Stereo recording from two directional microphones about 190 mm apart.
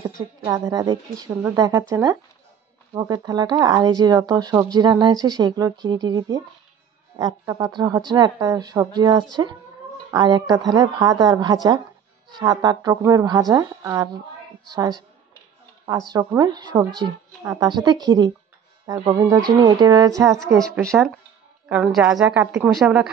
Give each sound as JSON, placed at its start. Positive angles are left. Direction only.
{"t": 0.5, "sound": "a woman's voice", "side_deg": -20}
{"t": 13.6, "sound": "a woman's voice", "side_deg": -10}
{"t": 16.1, "sound": "speech", "side_deg": -20}
{"t": 20.5, "sound": "a woman's voice", "side_deg": 0}